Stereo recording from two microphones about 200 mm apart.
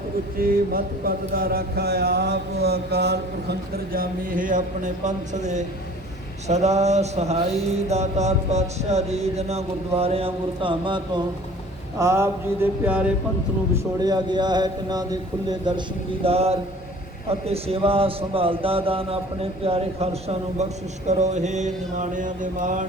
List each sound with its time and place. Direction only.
0.3 s mantra: 45° right (ahead or behind)
6.5 s speech: 35° right (ahead or behind)
11.9 s a sound: 15° right (ahead or behind)
13.7 s a man's voice: 20° right (ahead or behind); by 22.9 s 40° right (ahead or behind)